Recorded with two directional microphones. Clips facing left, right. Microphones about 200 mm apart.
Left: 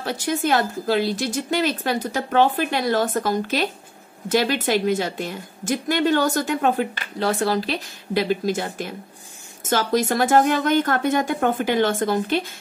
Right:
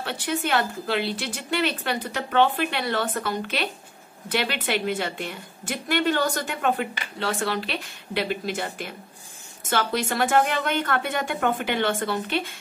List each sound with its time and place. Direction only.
0.0 s a woman's voice: 40° left (ahead or behind)